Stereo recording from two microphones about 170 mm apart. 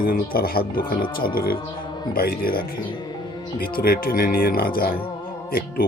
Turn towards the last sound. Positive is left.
turn(degrees=60)  # may be behind; listen again after turning